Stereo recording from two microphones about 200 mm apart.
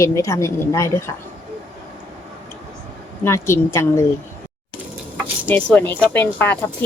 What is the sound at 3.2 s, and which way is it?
Speech, 15° left (ahead or behind).